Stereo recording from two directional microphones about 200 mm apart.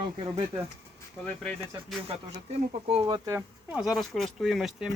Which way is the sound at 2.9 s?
25° right (ahead or behind).